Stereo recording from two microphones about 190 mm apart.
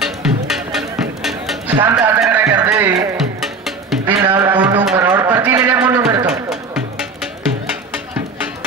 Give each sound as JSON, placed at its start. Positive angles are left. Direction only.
{"t": 0.0, "sound": "music", "side_deg": 0}
{"t": 1.9, "sound": "speech", "side_deg": -15}
{"t": 2.2, "sound": "a sound", "side_deg": -15}
{"t": 3.2, "sound": "music", "side_deg": 0}
{"t": 4.1, "sound": "a sound", "side_deg": -15}
{"t": 6.2, "sound": "music", "side_deg": 0}